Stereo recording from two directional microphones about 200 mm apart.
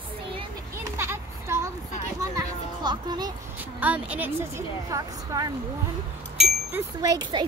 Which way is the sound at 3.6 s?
5° right (ahead or behind).